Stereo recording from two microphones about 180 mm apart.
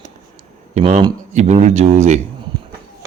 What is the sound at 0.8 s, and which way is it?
A man's voice, 35° right (ahead or behind).